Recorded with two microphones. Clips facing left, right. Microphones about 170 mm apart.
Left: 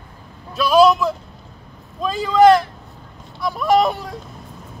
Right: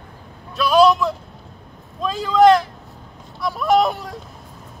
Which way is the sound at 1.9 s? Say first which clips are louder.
Left 1 dB; centre (ahead or behind).